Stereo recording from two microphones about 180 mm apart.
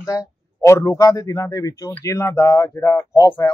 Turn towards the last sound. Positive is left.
turn(degrees=15)  # may be behind; listen again after turning